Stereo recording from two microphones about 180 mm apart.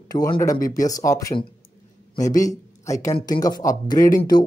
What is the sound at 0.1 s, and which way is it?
Speech, 20° left (ahead or behind).